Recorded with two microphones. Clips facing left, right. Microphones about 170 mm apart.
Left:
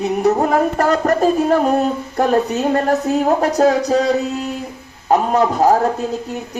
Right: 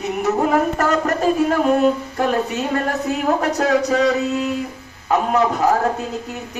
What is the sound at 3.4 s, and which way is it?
Speech, 35° left (ahead or behind).